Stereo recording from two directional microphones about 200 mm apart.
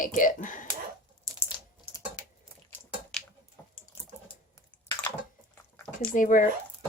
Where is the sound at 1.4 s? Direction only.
20° left (ahead or behind).